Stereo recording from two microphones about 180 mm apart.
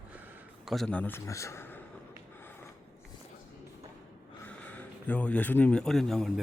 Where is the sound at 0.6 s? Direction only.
Centre (ahead or behind).